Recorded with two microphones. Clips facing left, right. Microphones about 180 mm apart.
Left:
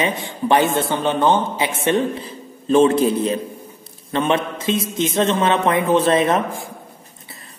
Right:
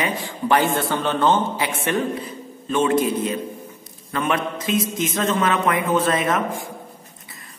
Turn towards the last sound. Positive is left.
turn(degrees=30)  # may be behind; listen again after turning